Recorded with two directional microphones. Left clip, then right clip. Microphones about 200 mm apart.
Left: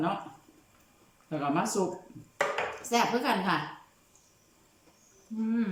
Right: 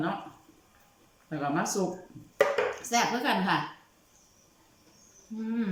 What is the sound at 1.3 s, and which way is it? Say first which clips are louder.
Speech: even; 10° left (ahead or behind).